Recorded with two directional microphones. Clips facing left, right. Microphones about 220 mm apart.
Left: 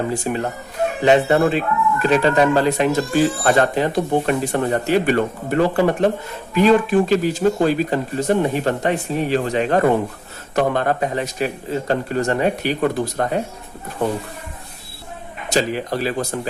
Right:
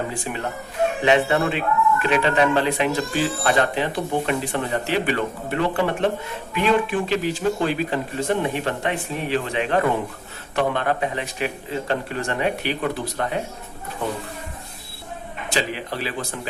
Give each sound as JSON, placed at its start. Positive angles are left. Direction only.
{"t": 0.3, "sound": "speech", "side_deg": 40}
{"t": 15.4, "sound": "speech", "side_deg": 40}